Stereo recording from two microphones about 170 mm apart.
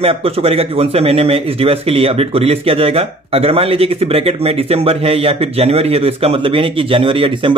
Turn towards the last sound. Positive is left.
turn(degrees=-30)  # may be behind; listen again after turning